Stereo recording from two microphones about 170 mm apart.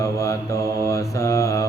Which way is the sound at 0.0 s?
20° left (ahead or behind).